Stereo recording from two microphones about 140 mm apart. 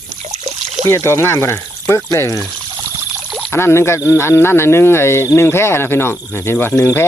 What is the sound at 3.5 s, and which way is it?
Speech, 15° left (ahead or behind).